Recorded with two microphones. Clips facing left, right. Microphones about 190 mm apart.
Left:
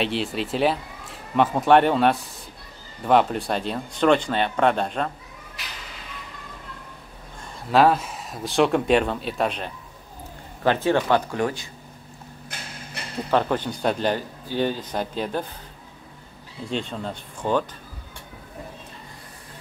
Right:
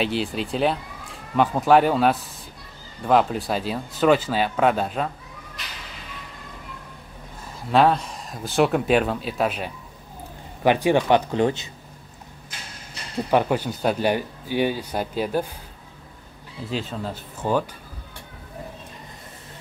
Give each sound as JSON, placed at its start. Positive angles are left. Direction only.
{"t": 0.0, "sound": "speech", "side_deg": 0}
{"t": 7.7, "sound": "speech", "side_deg": 5}
{"t": 13.3, "sound": "speech", "side_deg": -10}
{"t": 16.6, "sound": "speech", "side_deg": -5}